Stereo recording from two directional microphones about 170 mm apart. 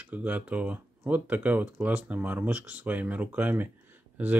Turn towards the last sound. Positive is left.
turn(degrees=-10)  # may be behind; listen again after turning